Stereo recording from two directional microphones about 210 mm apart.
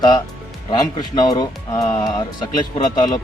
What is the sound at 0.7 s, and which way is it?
Speech, 20° left (ahead or behind).